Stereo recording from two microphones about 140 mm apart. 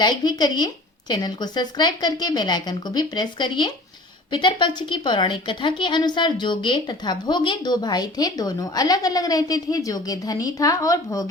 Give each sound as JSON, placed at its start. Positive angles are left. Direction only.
{"t": 0.0, "sound": "a woman's voice", "side_deg": 30}